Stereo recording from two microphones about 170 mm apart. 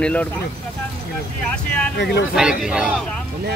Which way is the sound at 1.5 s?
5° left (ahead or behind).